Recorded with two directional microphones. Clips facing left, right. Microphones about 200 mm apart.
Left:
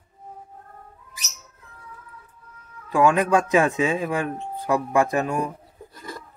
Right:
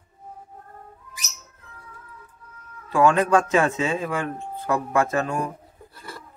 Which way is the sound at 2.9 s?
15° left (ahead or behind).